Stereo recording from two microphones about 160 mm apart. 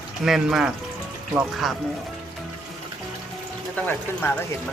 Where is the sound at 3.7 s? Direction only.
10° left (ahead or behind).